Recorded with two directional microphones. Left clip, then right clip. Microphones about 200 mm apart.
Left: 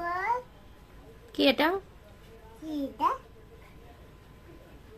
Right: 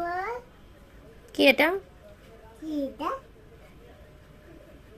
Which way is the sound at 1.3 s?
Centre (ahead or behind).